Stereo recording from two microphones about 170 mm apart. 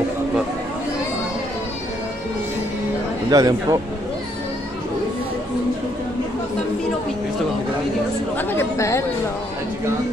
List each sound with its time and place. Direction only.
3.3 s a man's voice: 20° right (ahead or behind)
8.4 s chatter: 15° left (ahead or behind)